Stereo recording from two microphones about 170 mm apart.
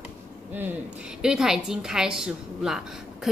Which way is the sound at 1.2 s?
5° right (ahead or behind).